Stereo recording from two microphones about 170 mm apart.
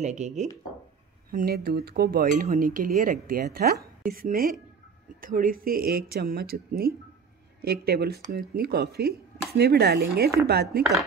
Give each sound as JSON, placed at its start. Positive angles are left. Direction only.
{"t": 0.0, "sound": "speech", "side_deg": -45}
{"t": 1.3, "sound": "speech", "side_deg": -65}
{"t": 10.8, "sound": "dishes", "side_deg": 0}